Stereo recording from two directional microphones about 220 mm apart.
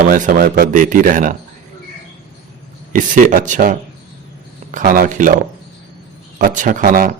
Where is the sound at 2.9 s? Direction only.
35° right (ahead or behind).